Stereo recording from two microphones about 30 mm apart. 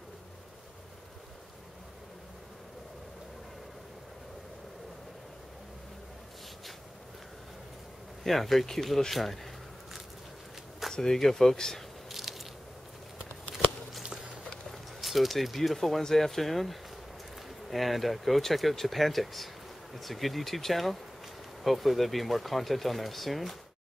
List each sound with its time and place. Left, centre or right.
8.2 s speech: centre
10.9 s speech: centre
12.1 s biting: centre
14.7 s speech: centre
16.0 s speech: centre